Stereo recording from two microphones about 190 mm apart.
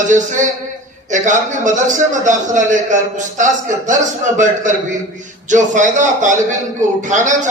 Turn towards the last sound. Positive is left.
turn(degrees=-40)  # may be behind; listen again after turning